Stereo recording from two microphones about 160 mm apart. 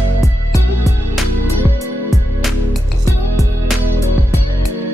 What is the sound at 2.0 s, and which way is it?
Music, centre (ahead or behind).